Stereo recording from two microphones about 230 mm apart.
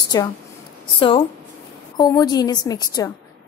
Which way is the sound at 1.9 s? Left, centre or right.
Centre.